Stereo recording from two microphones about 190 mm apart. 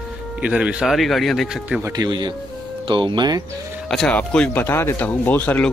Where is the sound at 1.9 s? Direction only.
20° right (ahead or behind).